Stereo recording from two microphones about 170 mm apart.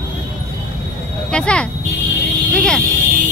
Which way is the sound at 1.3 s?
5° left (ahead or behind).